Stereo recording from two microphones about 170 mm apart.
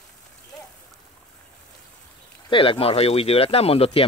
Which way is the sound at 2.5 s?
30° left (ahead or behind).